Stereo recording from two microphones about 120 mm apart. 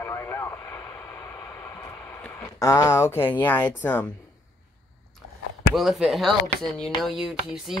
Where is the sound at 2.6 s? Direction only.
25° left (ahead or behind).